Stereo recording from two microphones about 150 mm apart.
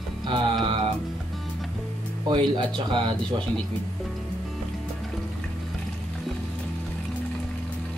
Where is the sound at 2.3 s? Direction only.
30° right (ahead or behind).